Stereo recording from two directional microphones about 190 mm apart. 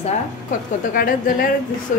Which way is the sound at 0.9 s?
50° left (ahead or behind).